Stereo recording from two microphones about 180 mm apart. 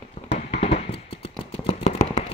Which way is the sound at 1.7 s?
35° left (ahead or behind).